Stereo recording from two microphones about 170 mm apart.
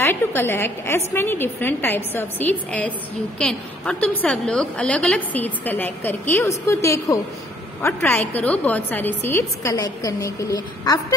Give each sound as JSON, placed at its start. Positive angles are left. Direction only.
{"t": 0.0, "sound": "a woman's voice", "side_deg": 10}